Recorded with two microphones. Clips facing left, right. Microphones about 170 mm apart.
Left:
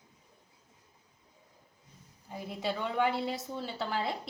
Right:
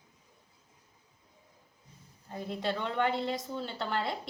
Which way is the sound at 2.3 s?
5° left (ahead or behind).